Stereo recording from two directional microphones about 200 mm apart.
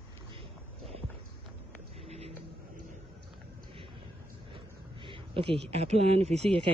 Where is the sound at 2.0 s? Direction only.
30° right (ahead or behind).